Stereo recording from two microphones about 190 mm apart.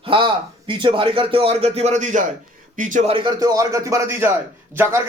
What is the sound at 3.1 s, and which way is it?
Speech, 25° right (ahead or behind).